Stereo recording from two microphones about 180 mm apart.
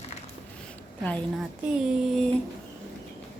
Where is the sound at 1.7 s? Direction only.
5° right (ahead or behind).